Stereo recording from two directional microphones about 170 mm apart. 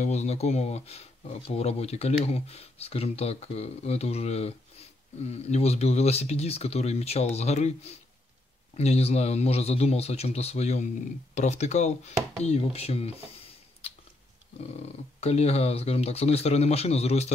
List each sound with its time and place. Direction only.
0.0 s speech: 40° left (ahead or behind)
14.8 s speech: 40° left (ahead or behind)